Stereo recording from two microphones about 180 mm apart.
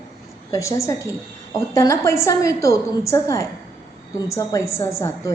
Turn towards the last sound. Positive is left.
turn(degrees=15)  # may be behind; listen again after turning